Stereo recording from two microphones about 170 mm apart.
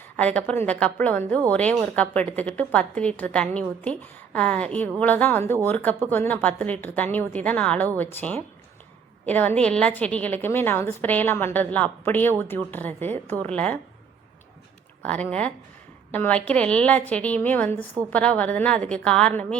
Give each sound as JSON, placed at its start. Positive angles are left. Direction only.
{"t": 0.0, "sound": "a woman's voice", "side_deg": 10}
{"t": 15.0, "sound": "a woman's voice", "side_deg": 5}